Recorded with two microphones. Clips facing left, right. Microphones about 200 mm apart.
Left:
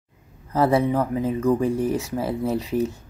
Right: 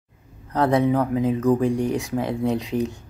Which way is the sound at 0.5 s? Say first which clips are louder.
Even; centre (ahead or behind).